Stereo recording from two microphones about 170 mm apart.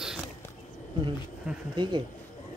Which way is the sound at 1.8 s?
25° right (ahead or behind).